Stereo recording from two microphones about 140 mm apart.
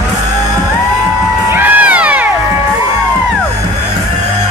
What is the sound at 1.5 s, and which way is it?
Crowd, 15° right (ahead or behind).